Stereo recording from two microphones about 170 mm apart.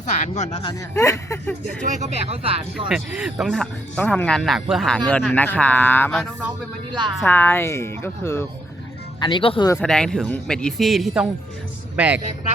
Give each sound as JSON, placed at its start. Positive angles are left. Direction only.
{"t": 0.0, "sound": "speech", "side_deg": 45}
{"t": 0.6, "sound": "speech", "side_deg": 20}
{"t": 1.8, "sound": "speech", "side_deg": -45}
{"t": 2.9, "sound": "speech", "side_deg": -5}
{"t": 9.2, "sound": "speech", "side_deg": 30}
{"t": 9.7, "sound": "speech", "side_deg": 5}